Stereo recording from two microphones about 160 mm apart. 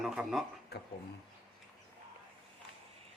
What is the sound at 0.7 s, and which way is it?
Speech, 90° left.